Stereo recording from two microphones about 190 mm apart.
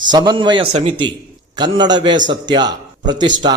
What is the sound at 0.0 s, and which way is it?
A man's voice, 20° right (ahead or behind).